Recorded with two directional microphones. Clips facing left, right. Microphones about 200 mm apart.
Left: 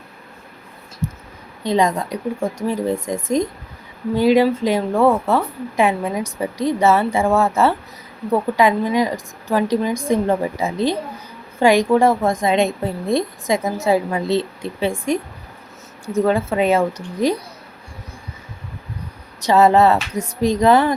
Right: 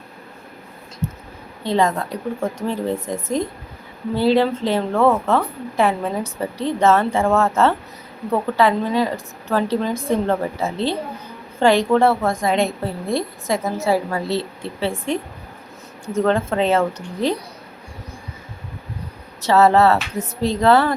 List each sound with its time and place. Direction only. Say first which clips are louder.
1.6 s a woman's voice: left 1 dB; 15° left (ahead or behind)
16.1 s a woman's voice: left 1 dB; 10° left (ahead or behind)
19.4 s a woman's voice: left 1 dB; 15° left (ahead or behind)